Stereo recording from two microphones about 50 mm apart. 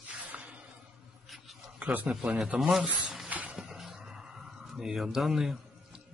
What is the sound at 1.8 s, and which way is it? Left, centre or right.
Speech, right.